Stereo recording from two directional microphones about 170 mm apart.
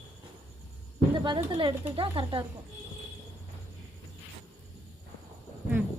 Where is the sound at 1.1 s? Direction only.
25° right (ahead or behind).